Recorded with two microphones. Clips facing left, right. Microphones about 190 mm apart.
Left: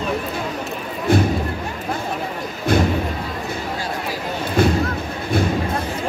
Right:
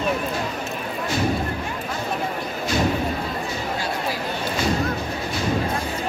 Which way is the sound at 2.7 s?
55° left (ahead or behind).